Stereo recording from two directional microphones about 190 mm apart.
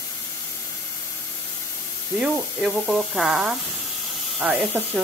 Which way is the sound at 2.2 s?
Centre (ahead or behind).